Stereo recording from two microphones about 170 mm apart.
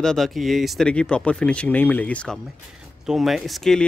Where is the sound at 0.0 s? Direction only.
Centre (ahead or behind).